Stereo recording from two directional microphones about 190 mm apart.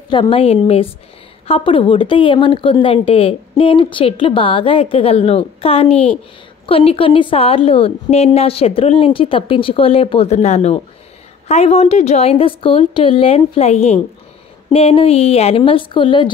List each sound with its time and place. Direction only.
0.1 s a woman's voice: 25° left (ahead or behind)